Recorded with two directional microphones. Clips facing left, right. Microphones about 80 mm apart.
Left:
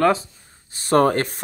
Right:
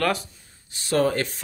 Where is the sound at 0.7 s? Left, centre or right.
Left.